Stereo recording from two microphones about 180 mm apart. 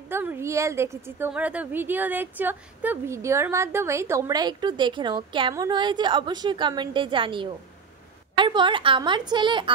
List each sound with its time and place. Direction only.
0.1 s a woman's voice: 10° right (ahead or behind)